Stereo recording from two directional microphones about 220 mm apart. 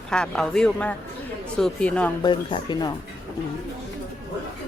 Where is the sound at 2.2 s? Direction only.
20° left (ahead or behind).